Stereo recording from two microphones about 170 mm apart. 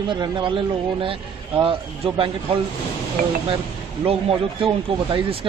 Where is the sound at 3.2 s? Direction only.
55° right (ahead or behind).